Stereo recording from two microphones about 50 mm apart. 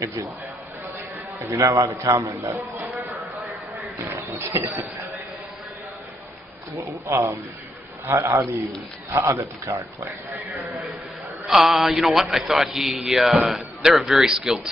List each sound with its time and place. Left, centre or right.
0.0 s a man's voice: right
1.5 s a man's voice: right
4.1 s speech: right
6.8 s speech: right
8.1 s a man's voice: right
11.4 s a man's voice: centre